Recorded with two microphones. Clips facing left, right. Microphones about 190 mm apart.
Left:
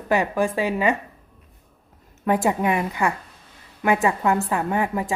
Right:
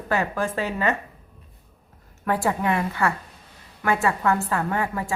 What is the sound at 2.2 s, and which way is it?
A woman's voice, 20° left (ahead or behind).